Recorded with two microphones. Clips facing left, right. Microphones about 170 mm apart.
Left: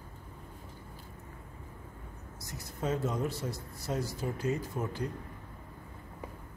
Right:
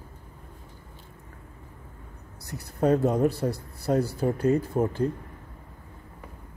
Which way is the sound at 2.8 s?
60° right (ahead or behind).